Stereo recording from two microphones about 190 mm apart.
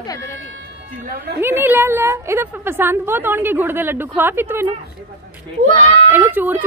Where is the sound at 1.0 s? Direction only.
50° right (ahead or behind).